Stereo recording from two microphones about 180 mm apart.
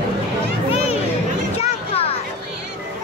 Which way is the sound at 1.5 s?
35° left (ahead or behind).